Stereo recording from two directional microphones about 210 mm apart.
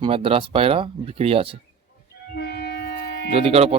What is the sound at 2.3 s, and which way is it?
Train, 50° left (ahead or behind).